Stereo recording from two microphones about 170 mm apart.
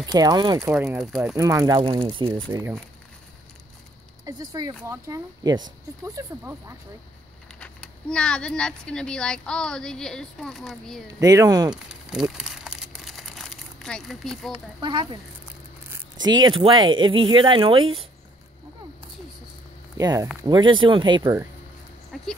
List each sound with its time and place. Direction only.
0.0 s speech: 20° right (ahead or behind)
0.8 s speech: centre (ahead or behind)
1.3 s speech: 20° right (ahead or behind)
1.8 s speech: 30° right (ahead or behind)
2.5 s speech: 15° right (ahead or behind)
4.2 s speech: 25° right (ahead or behind)
7.6 s speech: 5° left (ahead or behind)
11.1 s speech: 20° right (ahead or behind)
11.7 s crumpling: 5° right (ahead or behind)
14.5 s speech: 25° right (ahead or behind)
16.3 s speech: 25° right (ahead or behind)
20.0 s speech: 20° right (ahead or behind)
21.2 s speech: 15° right (ahead or behind)
22.1 s a sound: centre (ahead or behind)